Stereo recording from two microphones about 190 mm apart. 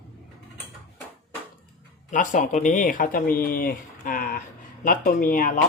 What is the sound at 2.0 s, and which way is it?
Speech, 40° left (ahead or behind).